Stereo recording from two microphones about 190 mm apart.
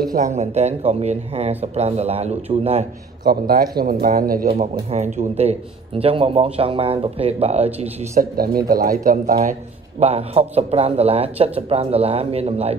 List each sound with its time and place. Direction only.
0.0 s a man's voice: 45° right (ahead or behind)
3.3 s speech: 50° right (ahead or behind)
4.5 s a man's voice: 35° right (ahead or behind)